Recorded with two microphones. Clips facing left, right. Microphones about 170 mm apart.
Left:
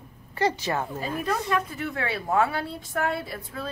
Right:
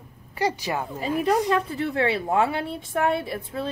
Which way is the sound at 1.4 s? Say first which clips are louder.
Right 4 dB; 30° right (ahead or behind).